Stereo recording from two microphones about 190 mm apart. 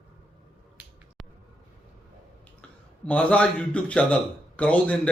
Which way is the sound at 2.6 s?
5° left (ahead or behind).